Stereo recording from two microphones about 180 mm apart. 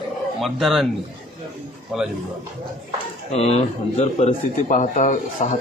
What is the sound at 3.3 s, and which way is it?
Speech, 35° left (ahead or behind).